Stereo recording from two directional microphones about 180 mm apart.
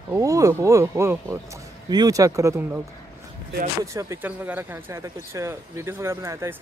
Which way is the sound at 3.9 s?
15° right (ahead or behind).